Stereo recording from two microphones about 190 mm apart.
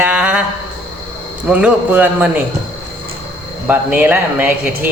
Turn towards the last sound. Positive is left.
turn(degrees=-10)  # may be behind; listen again after turning